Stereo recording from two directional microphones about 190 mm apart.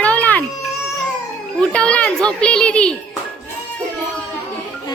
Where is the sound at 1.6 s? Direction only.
5° left (ahead or behind).